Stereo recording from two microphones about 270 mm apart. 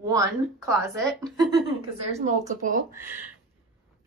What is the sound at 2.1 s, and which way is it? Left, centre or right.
Speech, right.